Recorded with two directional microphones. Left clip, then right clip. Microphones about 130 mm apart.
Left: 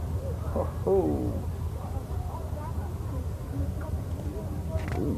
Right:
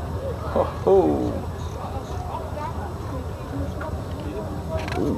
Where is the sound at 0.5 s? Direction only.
35° right (ahead or behind).